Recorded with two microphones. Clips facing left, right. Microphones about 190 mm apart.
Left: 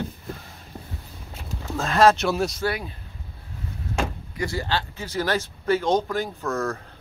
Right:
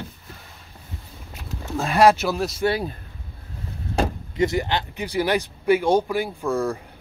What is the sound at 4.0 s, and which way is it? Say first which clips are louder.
Vehicle: right 4 dB; 35° right (ahead or behind).